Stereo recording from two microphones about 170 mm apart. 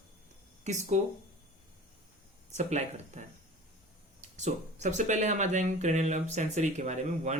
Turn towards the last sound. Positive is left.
turn(degrees=-45)  # may be behind; listen again after turning